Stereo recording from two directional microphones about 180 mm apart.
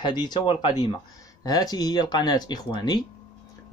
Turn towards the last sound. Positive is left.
turn(degrees=25)  # may be behind; listen again after turning